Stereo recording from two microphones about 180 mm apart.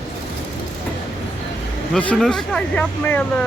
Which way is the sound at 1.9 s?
5° left (ahead or behind).